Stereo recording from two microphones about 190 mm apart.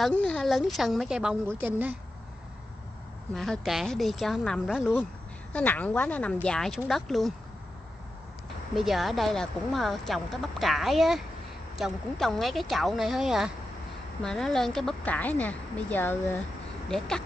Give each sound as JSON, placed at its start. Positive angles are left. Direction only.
{"t": 0.0, "sound": "speech", "side_deg": 5}
{"t": 3.3, "sound": "speech", "side_deg": 0}
{"t": 5.5, "sound": "a woman's voice", "side_deg": 5}
{"t": 8.7, "sound": "a woman's voice", "side_deg": 0}